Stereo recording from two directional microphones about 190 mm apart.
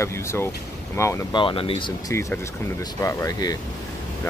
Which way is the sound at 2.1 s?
15° left (ahead or behind).